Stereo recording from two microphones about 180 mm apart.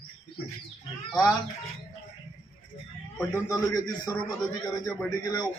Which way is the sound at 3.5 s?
20° left (ahead or behind).